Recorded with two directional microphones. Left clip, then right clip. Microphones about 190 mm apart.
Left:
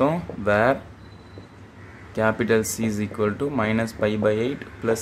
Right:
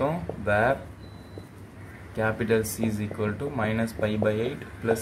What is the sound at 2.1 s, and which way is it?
Speech, 40° left (ahead or behind).